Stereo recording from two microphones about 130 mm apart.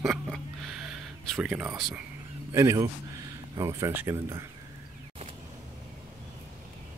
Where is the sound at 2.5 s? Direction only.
25° right (ahead or behind).